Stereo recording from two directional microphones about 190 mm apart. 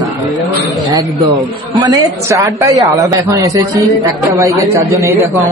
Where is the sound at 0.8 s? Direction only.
20° right (ahead or behind).